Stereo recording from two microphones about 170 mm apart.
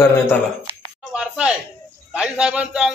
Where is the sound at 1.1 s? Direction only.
5° right (ahead or behind).